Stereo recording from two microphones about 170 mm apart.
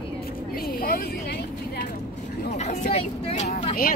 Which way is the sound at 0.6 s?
60° left (ahead or behind).